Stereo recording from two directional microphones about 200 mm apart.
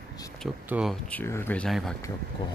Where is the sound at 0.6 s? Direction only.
5° right (ahead or behind).